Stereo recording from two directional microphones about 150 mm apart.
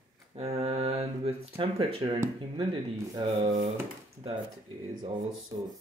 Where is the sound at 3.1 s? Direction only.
30° right (ahead or behind).